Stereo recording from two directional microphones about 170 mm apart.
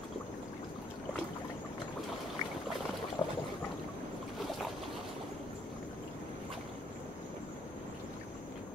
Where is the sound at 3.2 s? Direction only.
20° left (ahead or behind).